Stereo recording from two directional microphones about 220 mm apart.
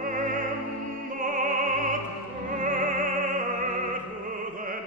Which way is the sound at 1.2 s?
35° right (ahead or behind).